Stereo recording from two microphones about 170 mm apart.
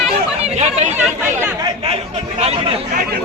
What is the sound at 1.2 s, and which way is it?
Speech, 15° right (ahead or behind).